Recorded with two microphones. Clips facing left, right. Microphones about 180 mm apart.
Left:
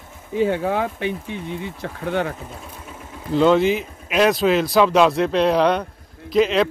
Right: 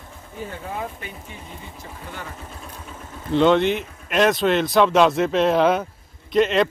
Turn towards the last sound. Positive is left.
turn(degrees=0)  # may be behind; listen again after turning